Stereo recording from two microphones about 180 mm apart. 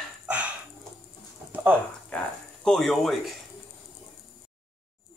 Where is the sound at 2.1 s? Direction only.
5° left (ahead or behind).